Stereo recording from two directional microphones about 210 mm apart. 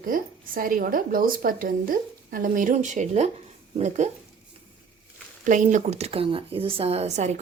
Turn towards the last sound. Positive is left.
turn(degrees=-35)  # may be behind; listen again after turning